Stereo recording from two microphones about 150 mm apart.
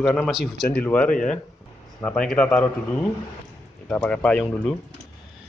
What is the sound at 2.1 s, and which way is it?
Speech, 5° left (ahead or behind).